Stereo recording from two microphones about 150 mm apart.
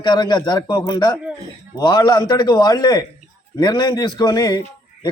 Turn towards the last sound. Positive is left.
turn(degrees=25)  # may be behind; listen again after turning